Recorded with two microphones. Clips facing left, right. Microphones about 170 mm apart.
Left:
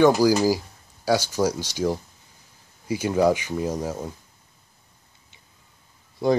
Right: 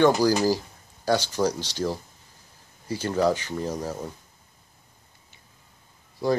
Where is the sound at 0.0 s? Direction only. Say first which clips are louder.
Left 2 dB; 5° left (ahead or behind).